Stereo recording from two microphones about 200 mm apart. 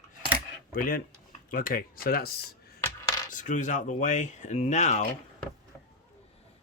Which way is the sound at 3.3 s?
40° left (ahead or behind).